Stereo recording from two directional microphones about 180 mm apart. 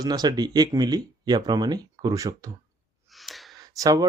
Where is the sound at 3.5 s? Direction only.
20° right (ahead or behind).